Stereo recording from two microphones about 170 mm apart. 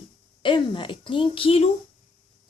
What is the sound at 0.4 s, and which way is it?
Speech, 30° left (ahead or behind).